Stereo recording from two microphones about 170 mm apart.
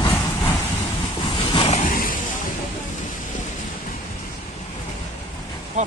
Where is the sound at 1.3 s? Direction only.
25° left (ahead or behind).